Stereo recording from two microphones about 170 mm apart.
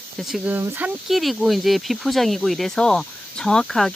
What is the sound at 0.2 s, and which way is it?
Speech, centre (ahead or behind).